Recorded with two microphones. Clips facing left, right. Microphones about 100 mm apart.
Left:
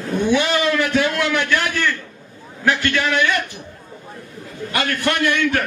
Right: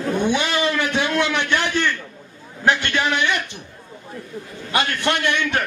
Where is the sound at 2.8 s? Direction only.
20° right (ahead or behind).